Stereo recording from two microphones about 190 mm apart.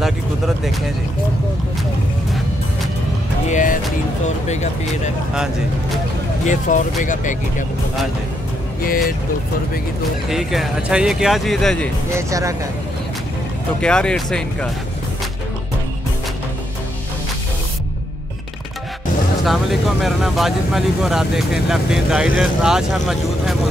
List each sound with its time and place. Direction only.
3.4 s speech: 45° left (ahead or behind)
6.4 s speech: 40° left (ahead or behind)
10.3 s speech: centre (ahead or behind)
12.1 s speech: 15° right (ahead or behind)
13.7 s speech: 5° left (ahead or behind)
19.4 s speech: centre (ahead or behind)